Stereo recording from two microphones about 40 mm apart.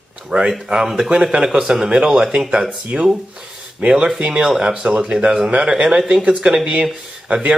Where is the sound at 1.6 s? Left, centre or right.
Centre.